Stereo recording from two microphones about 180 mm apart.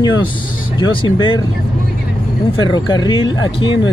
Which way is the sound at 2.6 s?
25° left (ahead or behind).